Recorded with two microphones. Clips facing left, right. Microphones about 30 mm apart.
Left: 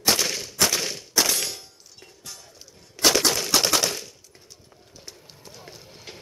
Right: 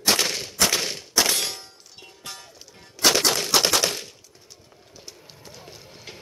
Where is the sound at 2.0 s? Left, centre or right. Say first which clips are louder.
Right 4 dB; right.